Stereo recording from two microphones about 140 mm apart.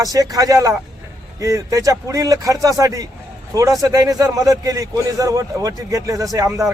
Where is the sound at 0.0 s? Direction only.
25° right (ahead or behind).